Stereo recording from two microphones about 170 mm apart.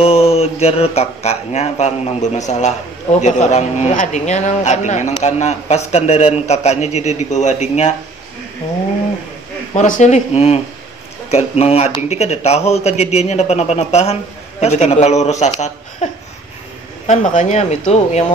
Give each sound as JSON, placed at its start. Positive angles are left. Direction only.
{"t": 0.0, "sound": "a man's voice", "side_deg": 35}
{"t": 9.8, "sound": "a man's voice", "side_deg": 45}